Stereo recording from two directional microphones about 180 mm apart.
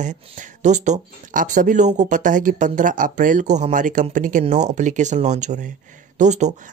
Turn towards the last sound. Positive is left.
turn(degrees=-40)  # may be behind; listen again after turning